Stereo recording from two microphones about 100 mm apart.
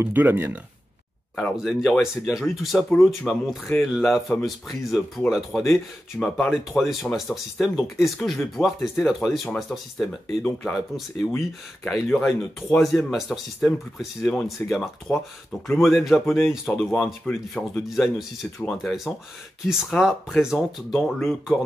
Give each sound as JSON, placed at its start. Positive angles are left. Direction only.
{"t": 0.0, "sound": "speech", "side_deg": -20}
{"t": 1.6, "sound": "speech", "side_deg": 0}